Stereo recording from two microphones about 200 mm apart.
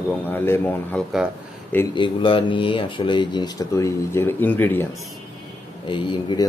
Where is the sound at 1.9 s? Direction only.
25° left (ahead or behind); by 4.9 s 10° left (ahead or behind).